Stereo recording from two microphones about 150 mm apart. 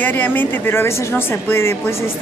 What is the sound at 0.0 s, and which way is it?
Speech, 15° left (ahead or behind).